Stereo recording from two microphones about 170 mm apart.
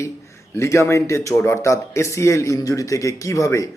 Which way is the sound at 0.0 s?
15° left (ahead or behind).